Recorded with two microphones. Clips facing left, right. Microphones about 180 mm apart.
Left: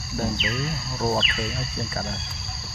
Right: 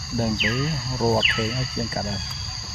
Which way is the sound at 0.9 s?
15° right (ahead or behind).